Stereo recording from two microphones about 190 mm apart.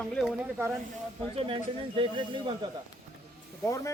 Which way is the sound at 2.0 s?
25° right (ahead or behind).